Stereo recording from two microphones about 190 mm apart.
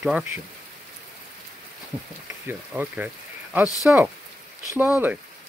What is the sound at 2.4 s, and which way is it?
Speech, 10° right (ahead or behind).